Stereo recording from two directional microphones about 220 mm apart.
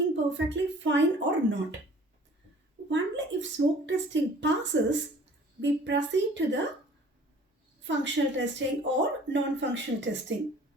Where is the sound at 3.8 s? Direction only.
55° right (ahead or behind).